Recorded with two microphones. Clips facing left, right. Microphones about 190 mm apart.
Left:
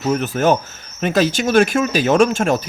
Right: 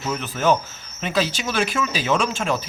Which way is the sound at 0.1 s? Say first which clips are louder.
Left 4 dB; 50° left (ahead or behind).